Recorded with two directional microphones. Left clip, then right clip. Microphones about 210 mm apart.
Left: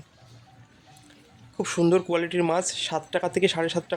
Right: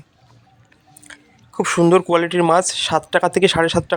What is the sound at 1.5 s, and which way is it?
Speech, 20° right (ahead or behind).